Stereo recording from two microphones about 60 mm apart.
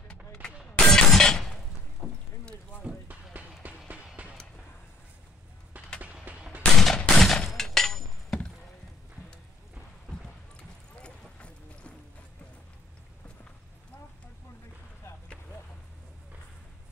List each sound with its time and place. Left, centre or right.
0.7 s shatter: centre
2.0 s boat: centre
3.1 s vehicle: right
3.9 s music: right
6.3 s gunshot: right
6.7 s gunshot: centre
7.0 s a sound: centre
11.0 s clip-clop: centre
15.0 s vehicle: left